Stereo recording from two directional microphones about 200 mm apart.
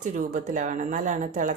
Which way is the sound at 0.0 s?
40° right (ahead or behind).